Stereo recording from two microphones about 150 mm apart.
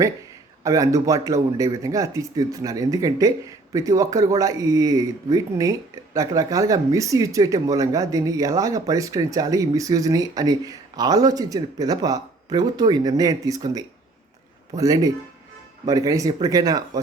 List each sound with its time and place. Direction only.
0.6 s speech: 20° right (ahead or behind)